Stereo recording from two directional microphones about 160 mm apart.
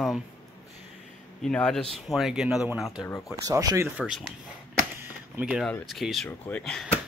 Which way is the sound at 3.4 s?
20° right (ahead or behind).